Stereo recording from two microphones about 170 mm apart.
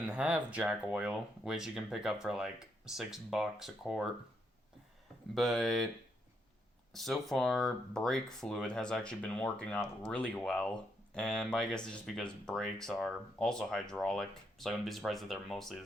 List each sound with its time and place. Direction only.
0.0 s speech: 5° right (ahead or behind)
5.3 s speech: centre (ahead or behind)
6.9 s speech: centre (ahead or behind)